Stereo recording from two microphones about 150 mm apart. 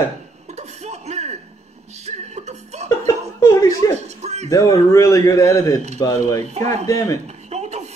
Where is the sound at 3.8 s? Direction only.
50° right (ahead or behind).